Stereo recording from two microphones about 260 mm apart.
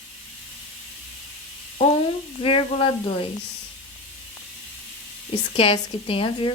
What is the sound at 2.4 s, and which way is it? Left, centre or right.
Speech, left.